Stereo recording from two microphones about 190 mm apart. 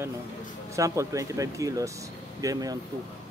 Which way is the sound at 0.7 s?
15° right (ahead or behind).